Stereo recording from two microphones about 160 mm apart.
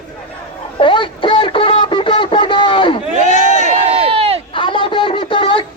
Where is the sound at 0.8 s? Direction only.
30° left (ahead or behind).